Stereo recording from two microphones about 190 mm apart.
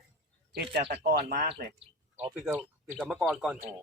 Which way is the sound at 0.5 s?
60° right (ahead or behind).